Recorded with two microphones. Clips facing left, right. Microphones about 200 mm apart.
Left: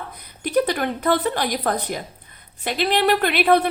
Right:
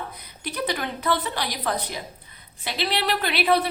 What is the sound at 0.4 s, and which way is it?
Speech, 50° left (ahead or behind).